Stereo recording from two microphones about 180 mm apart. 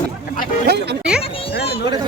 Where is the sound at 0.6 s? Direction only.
65° right (ahead or behind).